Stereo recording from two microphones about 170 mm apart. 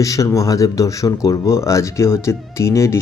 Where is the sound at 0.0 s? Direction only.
20° left (ahead or behind).